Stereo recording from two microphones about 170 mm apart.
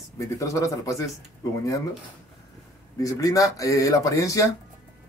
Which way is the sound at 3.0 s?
20° left (ahead or behind).